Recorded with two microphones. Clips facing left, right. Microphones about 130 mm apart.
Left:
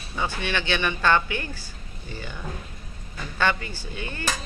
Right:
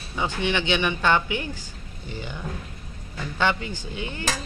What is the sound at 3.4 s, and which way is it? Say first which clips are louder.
Speech: right 1 dB; 15° right (ahead or behind).